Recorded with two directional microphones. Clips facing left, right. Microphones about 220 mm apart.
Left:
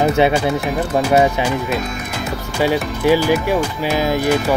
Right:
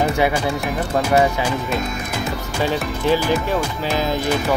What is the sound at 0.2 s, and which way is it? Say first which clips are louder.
Speech: left 4 dB; 20° left (ahead or behind).